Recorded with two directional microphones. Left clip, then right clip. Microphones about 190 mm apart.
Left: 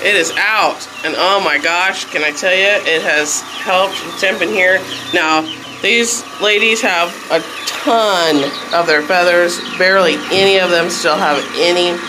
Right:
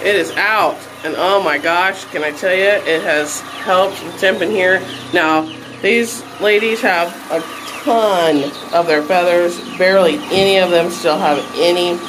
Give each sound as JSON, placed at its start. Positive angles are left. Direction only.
{"t": 0.0, "sound": "speech", "side_deg": 0}
{"t": 3.6, "sound": "speech", "side_deg": -25}
{"t": 5.1, "sound": "speech", "side_deg": -10}
{"t": 7.9, "sound": "speech", "side_deg": 15}
{"t": 8.7, "sound": "speech", "side_deg": 5}